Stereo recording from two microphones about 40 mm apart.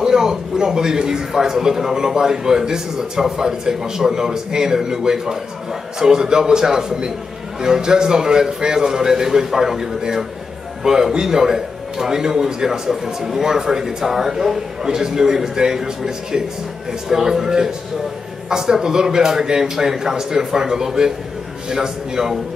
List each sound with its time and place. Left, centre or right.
0.0 s a man's voice: centre